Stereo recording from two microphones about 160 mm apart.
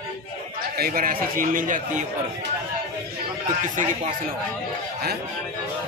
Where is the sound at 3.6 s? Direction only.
55° right (ahead or behind).